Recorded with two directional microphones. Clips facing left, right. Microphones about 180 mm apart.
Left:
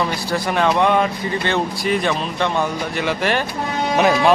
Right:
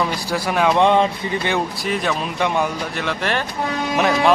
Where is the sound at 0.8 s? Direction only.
20° right (ahead or behind).